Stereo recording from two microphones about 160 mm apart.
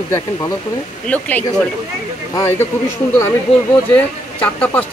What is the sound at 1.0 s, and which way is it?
Speech, 10° left (ahead or behind).